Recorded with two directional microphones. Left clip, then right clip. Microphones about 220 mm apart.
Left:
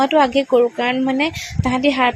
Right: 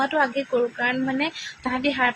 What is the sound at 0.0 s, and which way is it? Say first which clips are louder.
A woman's voice: left 8 dB; 25° left (ahead or behind).